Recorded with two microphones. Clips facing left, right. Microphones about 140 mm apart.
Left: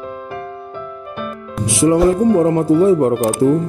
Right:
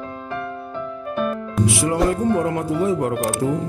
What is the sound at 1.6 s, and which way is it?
Speech, 25° left (ahead or behind).